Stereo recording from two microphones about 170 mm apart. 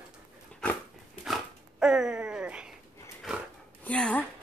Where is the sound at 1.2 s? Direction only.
5° right (ahead or behind).